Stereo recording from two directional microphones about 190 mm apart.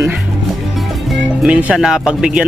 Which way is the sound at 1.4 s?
5° right (ahead or behind).